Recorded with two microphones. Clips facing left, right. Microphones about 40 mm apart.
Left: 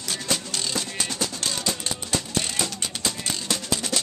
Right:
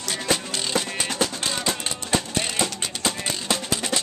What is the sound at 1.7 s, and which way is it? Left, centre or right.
Music, right.